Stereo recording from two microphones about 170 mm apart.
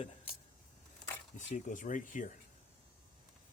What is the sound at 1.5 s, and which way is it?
Speech, 50° left (ahead or behind).